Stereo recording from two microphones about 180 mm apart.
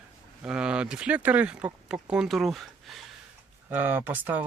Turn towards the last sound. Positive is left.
turn(degrees=-10)  # may be behind; listen again after turning